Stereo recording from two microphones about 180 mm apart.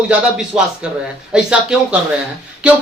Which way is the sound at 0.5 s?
5° right (ahead or behind).